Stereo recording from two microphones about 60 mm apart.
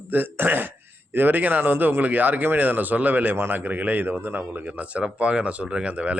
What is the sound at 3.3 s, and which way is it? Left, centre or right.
Speech, right.